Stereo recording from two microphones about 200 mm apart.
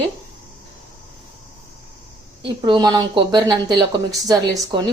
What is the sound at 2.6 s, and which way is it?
Speech, 20° right (ahead or behind).